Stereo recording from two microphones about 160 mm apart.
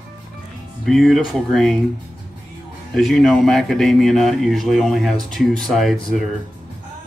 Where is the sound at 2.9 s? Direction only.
Centre (ahead or behind).